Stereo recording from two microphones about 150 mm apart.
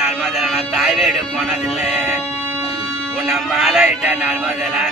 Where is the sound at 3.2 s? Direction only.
5° right (ahead or behind).